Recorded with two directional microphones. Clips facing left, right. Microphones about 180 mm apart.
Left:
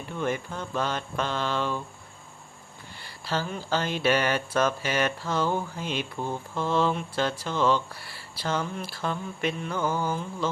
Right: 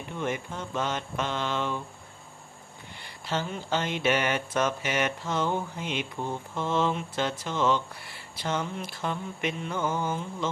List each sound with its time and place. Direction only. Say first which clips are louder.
0.2 s speech: left 2 dB; 20° right (ahead or behind)
3.0 s speech: left 1 dB; 20° right (ahead or behind)